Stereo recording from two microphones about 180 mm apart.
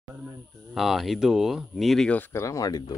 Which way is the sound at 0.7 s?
Centre (ahead or behind).